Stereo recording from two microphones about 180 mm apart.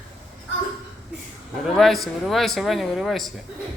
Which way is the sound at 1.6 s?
Centre (ahead or behind).